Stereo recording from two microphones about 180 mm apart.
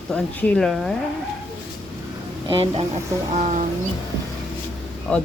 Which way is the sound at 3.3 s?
45° right (ahead or behind).